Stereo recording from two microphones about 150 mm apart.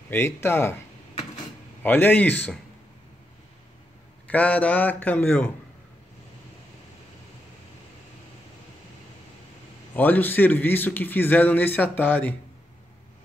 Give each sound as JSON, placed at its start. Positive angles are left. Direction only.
{"t": 0.1, "sound": "speech", "side_deg": 15}
{"t": 1.8, "sound": "speech", "side_deg": 15}
{"t": 4.3, "sound": "speech", "side_deg": 10}
{"t": 9.9, "sound": "speech", "side_deg": 10}